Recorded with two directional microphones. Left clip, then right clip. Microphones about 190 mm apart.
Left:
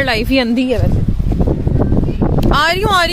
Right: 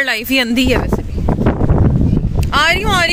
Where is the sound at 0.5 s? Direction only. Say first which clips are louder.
Right 2 dB; 15° right (ahead or behind).